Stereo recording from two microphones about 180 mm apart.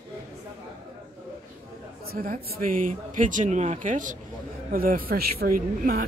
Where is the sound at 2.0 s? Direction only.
55° right (ahead or behind).